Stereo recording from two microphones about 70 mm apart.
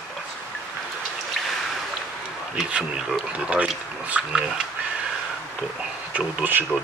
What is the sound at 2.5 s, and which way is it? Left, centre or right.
Speech, centre.